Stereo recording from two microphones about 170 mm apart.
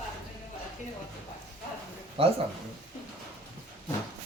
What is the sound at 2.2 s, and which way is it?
Speech, 35° right (ahead or behind).